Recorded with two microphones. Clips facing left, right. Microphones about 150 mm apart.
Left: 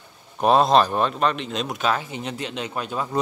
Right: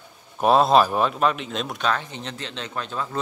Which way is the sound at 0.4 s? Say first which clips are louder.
Even; centre (ahead or behind).